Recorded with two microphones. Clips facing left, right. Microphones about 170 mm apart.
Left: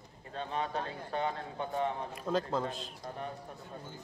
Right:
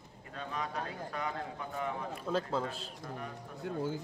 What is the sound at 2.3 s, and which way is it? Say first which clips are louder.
Speech: left 2 dB; 10° left (ahead or behind).